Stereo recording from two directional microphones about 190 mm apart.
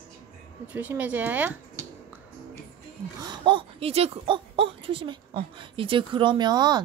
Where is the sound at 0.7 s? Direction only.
10° right (ahead or behind).